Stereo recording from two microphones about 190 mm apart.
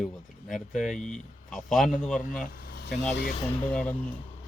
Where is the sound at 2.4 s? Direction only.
50° left (ahead or behind).